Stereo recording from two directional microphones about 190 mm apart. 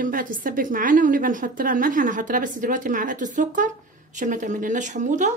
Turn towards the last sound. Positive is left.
turn(degrees=-40)  # may be behind; listen again after turning